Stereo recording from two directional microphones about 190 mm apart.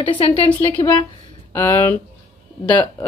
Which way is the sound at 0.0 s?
25° left (ahead or behind).